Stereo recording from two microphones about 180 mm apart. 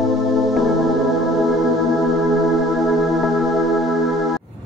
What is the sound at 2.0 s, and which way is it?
Music, centre (ahead or behind).